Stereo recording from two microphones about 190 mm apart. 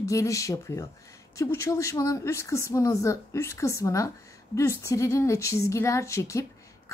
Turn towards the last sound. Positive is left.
turn(degrees=15)  # may be behind; listen again after turning